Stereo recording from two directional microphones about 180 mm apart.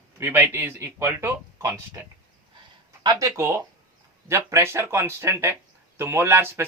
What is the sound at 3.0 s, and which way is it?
Speech, 20° right (ahead or behind).